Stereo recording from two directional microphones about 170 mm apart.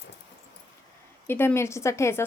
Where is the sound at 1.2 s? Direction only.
15° left (ahead or behind).